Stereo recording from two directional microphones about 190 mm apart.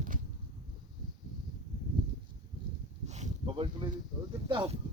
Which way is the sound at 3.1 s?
35° right (ahead or behind).